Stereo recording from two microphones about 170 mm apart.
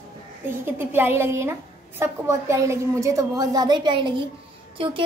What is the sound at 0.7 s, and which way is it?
A woman's voice, 15° right (ahead or behind).